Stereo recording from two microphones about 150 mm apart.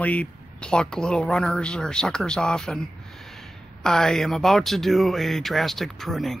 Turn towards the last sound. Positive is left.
turn(degrees=0)  # may be behind; listen again after turning